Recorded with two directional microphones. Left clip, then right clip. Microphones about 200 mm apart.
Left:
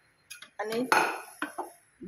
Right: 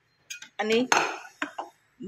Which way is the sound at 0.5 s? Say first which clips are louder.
Right 8 dB; 45° right (ahead or behind).